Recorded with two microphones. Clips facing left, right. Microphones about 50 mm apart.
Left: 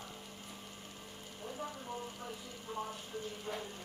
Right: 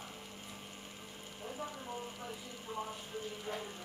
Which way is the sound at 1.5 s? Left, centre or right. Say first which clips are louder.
Even; centre.